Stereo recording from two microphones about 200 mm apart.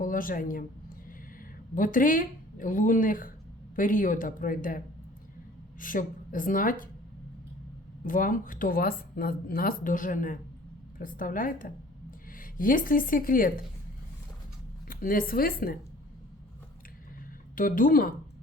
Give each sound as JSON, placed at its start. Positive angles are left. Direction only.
{"t": 0.0, "sound": "speech", "side_deg": 45}
{"t": 1.7, "sound": "speech", "side_deg": 45}
{"t": 5.8, "sound": "speech", "side_deg": 40}
{"t": 8.0, "sound": "a woman's voice", "side_deg": 45}
{"t": 14.8, "sound": "speech", "side_deg": 45}
{"t": 17.5, "sound": "speech", "side_deg": 45}